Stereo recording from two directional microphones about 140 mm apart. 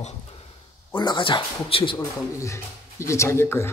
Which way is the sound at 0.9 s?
30° left (ahead or behind).